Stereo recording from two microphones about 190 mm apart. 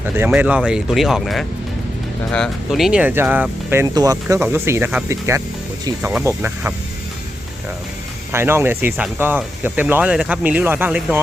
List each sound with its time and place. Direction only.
0.3 s speech: 5° right (ahead or behind)
8.3 s speech: 15° right (ahead or behind)